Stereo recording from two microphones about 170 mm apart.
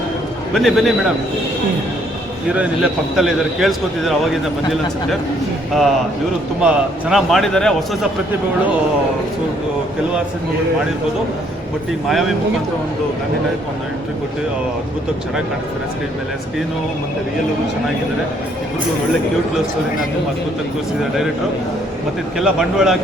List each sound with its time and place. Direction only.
0.5 s a man's voice: centre (ahead or behind)
2.5 s a man's voice: 5° right (ahead or behind)
6.6 s a man's voice: 5° right (ahead or behind)
22.4 s a man's voice: 5° right (ahead or behind)